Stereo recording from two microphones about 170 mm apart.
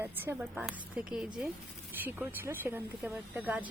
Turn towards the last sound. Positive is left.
turn(degrees=-10)  # may be behind; listen again after turning